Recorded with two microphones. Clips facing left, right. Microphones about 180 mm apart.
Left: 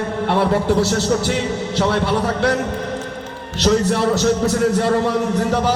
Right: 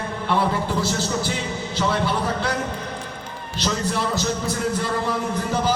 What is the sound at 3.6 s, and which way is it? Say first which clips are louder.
A man's voice: left 8 dB; 70° left (ahead or behind).